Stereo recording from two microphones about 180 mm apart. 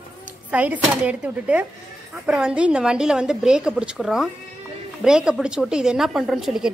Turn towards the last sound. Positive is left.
turn(degrees=0)  # may be behind; listen again after turning